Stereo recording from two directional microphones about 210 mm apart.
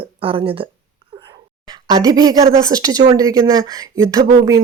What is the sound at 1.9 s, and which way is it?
A woman's voice, 15° right (ahead or behind).